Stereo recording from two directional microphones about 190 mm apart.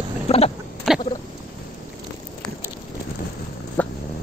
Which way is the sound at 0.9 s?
Centre (ahead or behind).